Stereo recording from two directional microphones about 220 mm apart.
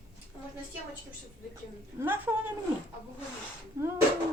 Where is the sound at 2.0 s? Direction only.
10° right (ahead or behind).